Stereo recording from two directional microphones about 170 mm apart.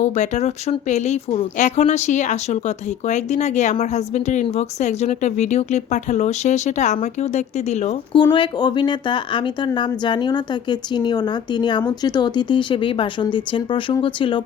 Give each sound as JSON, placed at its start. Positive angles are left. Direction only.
{"t": 0.0, "sound": "speech", "side_deg": 45}
{"t": 8.1, "sound": "speech", "side_deg": 25}